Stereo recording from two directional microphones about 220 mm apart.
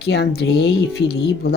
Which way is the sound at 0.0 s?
50° left (ahead or behind).